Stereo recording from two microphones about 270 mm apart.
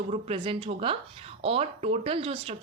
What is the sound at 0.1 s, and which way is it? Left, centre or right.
Speech, right.